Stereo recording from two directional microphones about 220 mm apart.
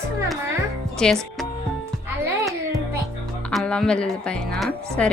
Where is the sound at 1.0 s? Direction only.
5° left (ahead or behind).